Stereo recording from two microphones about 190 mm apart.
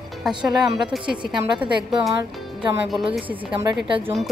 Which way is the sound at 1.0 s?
25° right (ahead or behind).